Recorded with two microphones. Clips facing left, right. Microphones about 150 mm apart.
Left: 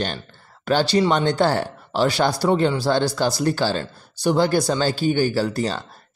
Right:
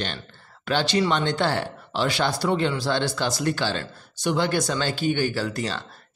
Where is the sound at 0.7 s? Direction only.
40° left (ahead or behind).